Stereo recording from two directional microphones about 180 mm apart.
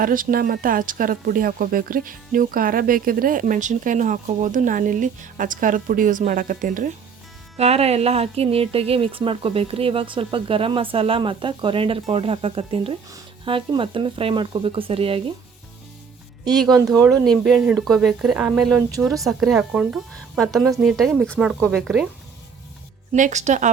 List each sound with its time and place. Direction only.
0.0 s speech: 50° right (ahead or behind)
7.5 s speech: 35° right (ahead or behind)
16.6 s speech: 20° right (ahead or behind)
17.2 s speech: centre (ahead or behind)
23.1 s speech: 40° right (ahead or behind)